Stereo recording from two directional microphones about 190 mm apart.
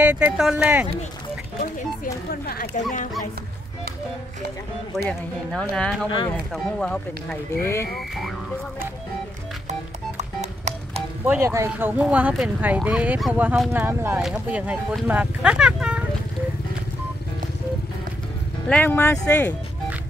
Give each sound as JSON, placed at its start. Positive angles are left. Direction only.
{"t": 0.0, "sound": "speech", "side_deg": -10}
{"t": 2.4, "sound": "speech", "side_deg": 50}
{"t": 5.5, "sound": "speech", "side_deg": 5}
{"t": 9.7, "sound": "music", "side_deg": -35}
{"t": 11.2, "sound": "speech", "side_deg": -15}
{"t": 18.7, "sound": "speech", "side_deg": 10}